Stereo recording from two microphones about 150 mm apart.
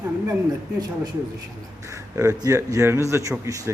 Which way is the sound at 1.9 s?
20° right (ahead or behind).